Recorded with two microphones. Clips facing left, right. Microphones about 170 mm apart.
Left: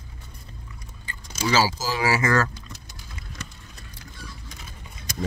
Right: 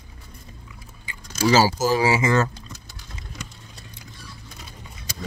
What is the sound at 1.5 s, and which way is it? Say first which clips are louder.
Speech: right 5 dB; 40° right (ahead or behind).